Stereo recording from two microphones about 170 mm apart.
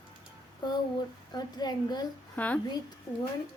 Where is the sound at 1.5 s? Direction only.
25° left (ahead or behind).